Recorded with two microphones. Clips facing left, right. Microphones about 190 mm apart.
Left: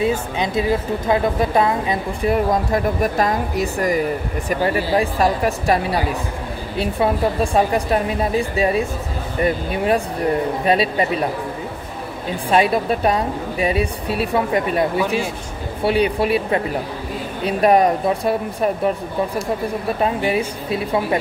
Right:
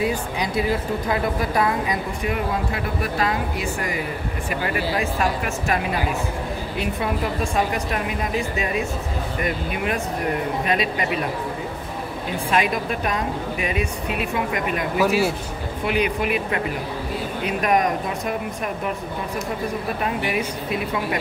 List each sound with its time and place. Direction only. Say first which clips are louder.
0.0 s a woman's voice: left 4 dB; 25° left (ahead or behind)
7.5 s a woman's voice: left 6 dB; 35° left (ahead or behind)
12.4 s a woman's voice: left 6 dB; 30° left (ahead or behind)
20.0 s a woman's voice: left 6 dB; 30° left (ahead or behind)